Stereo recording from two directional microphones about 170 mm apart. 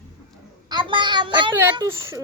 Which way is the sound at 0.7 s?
25° right (ahead or behind).